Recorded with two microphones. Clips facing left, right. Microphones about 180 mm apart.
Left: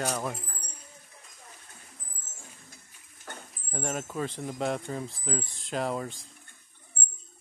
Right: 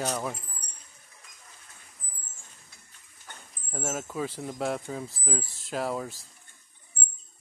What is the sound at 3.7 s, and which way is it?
Speech, 5° right (ahead or behind).